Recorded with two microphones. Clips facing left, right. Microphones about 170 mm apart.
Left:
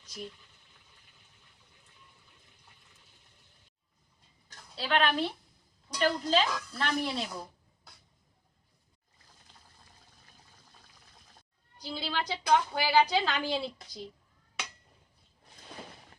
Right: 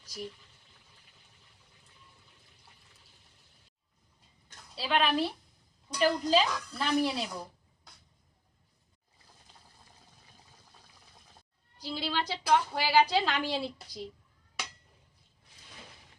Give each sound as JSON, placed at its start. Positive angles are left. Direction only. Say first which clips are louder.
{"t": 4.7, "sound": "a woman's voice", "louder": "even", "side_deg": -5}
{"t": 11.9, "sound": "a woman's voice", "louder": "right 1 dB", "side_deg": 0}
{"t": 15.4, "sound": "a sound", "louder": "left 7 dB", "side_deg": 55}